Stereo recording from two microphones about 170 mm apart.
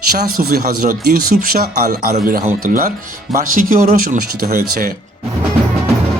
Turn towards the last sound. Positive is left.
turn(degrees=-55)  # may be behind; listen again after turning